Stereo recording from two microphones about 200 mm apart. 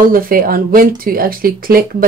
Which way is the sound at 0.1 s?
45° right (ahead or behind).